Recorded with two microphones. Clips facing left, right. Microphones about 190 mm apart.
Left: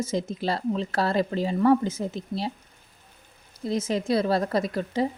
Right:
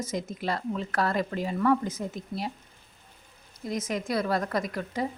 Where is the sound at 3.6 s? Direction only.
30° left (ahead or behind).